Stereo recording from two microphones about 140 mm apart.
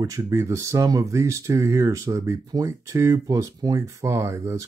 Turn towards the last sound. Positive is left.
turn(degrees=-20)  # may be behind; listen again after turning